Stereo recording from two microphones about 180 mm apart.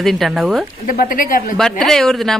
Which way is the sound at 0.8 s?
50° left (ahead or behind).